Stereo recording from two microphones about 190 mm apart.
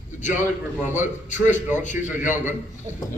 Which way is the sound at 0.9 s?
40° left (ahead or behind).